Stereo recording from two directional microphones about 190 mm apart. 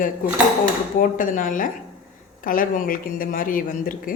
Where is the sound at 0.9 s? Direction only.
45° left (ahead or behind).